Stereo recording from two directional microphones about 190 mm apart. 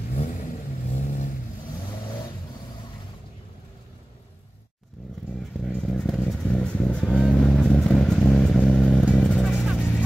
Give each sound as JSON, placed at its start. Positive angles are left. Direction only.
{"t": 0.9, "sound": "vehicle", "side_deg": 40}
{"t": 5.7, "sound": "vehicle", "side_deg": 0}